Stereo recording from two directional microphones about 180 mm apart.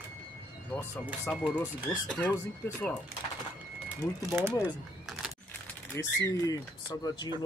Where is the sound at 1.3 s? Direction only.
5° left (ahead or behind).